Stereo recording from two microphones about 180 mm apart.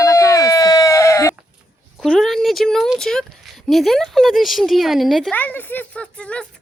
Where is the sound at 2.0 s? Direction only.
Centre (ahead or behind).